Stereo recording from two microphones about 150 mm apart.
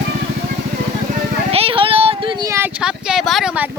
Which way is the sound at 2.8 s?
5° right (ahead or behind).